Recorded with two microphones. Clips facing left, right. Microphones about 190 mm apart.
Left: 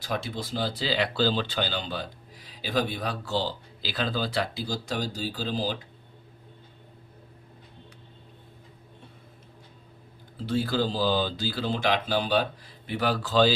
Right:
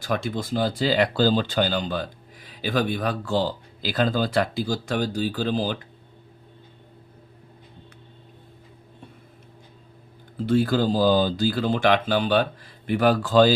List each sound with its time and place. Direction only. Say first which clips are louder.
0.0 s speech: right 5 dB; 50° right (ahead or behind)
10.4 s speech: right 6 dB; 50° right (ahead or behind)